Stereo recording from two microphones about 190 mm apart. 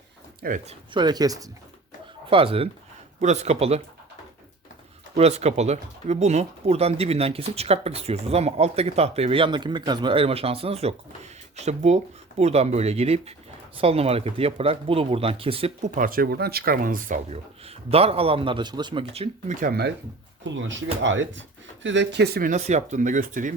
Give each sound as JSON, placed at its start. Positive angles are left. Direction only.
{"t": 0.4, "sound": "speech", "side_deg": -45}
{"t": 0.9, "sound": "speech", "side_deg": -20}
{"t": 5.1, "sound": "speech", "side_deg": -35}
{"t": 17.2, "sound": "speech", "side_deg": -30}
{"t": 20.4, "sound": "speech", "side_deg": -75}
{"t": 21.8, "sound": "speech", "side_deg": -65}
{"t": 22.5, "sound": "speech", "side_deg": -35}